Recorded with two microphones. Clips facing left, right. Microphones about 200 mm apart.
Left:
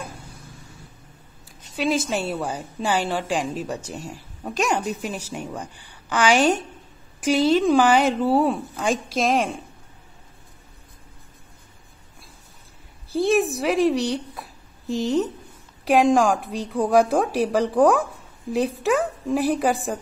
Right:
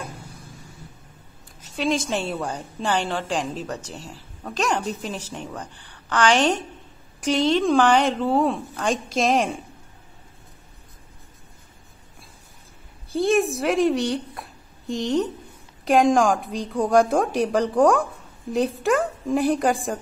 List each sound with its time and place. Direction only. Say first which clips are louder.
1.8 s a woman's voice: left 1 dB; 5° left (ahead or behind)
13.1 s a woman's voice: even; centre (ahead or behind)